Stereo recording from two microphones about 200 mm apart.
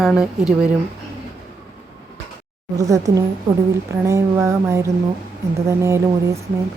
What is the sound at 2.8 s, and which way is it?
Speech, 15° right (ahead or behind).